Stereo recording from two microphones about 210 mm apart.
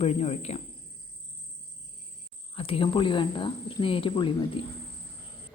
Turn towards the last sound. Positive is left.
turn(degrees=25)  # may be behind; listen again after turning